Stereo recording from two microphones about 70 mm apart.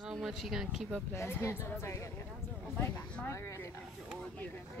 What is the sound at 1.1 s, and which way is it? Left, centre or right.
Speech, left.